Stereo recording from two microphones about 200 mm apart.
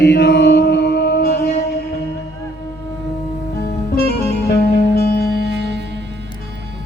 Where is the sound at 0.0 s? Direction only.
55° left (ahead or behind).